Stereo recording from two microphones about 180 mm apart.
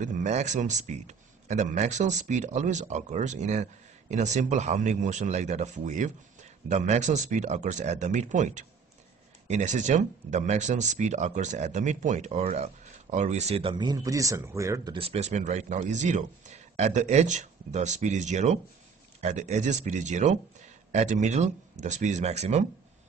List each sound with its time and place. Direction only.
0.0 s speech: 45° right (ahead or behind); by 15.0 s 15° right (ahead or behind)
15.0 s speech: 35° right (ahead or behind)